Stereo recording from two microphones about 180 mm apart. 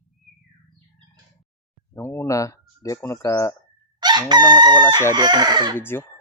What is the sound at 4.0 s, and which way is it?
Chicken, 25° right (ahead or behind).